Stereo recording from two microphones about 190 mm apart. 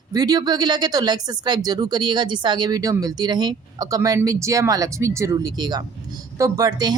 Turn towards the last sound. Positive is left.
turn(degrees=-20)  # may be behind; listen again after turning